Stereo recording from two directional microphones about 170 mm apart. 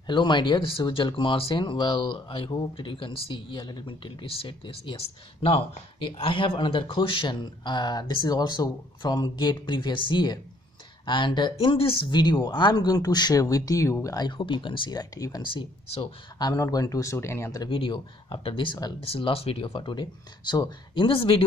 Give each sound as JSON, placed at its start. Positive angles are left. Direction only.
{"t": 0.0, "sound": "speech", "side_deg": 25}